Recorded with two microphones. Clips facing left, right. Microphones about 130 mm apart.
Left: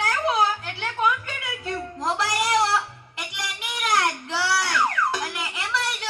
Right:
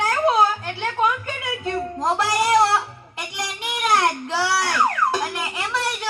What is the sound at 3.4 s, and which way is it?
Music, 30° right (ahead or behind).